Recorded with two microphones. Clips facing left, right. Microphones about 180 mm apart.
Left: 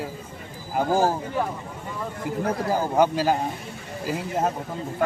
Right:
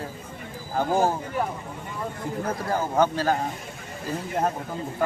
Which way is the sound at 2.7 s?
10° left (ahead or behind).